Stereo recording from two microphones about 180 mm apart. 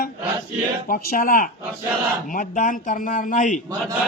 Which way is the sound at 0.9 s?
50° left (ahead or behind).